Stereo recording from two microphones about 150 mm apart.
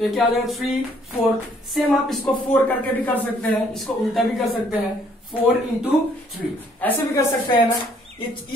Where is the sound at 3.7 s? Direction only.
Centre (ahead or behind).